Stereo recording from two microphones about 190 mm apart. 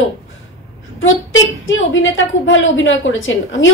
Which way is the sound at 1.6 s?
90° left.